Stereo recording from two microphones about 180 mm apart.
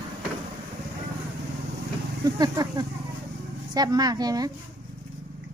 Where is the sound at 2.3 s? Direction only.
20° right (ahead or behind).